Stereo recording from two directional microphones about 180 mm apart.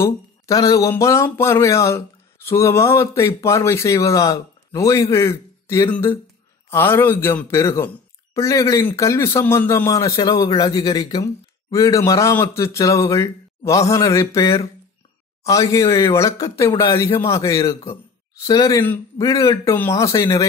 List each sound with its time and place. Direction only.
0.0 s speech: 20° left (ahead or behind)